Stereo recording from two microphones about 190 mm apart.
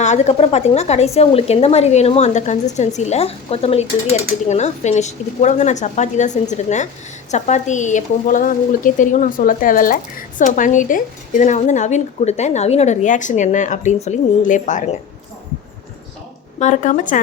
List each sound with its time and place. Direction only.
0.0 s speech: 35° left (ahead or behind)
16.6 s speech: 40° left (ahead or behind)